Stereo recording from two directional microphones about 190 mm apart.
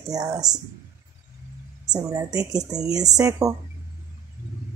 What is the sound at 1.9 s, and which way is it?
Speech, 20° right (ahead or behind).